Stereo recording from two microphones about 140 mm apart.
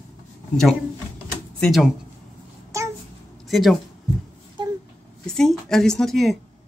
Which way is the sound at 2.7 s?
20° right (ahead or behind).